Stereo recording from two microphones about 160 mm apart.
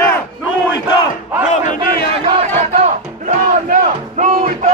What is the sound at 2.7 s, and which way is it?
Battle cry, 55° right (ahead or behind).